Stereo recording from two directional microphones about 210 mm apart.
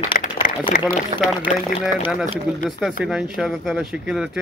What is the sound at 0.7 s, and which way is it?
Speech, 45° left (ahead or behind).